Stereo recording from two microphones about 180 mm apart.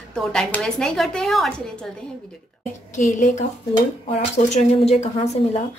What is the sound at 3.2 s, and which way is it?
Speech, 40° left (ahead or behind).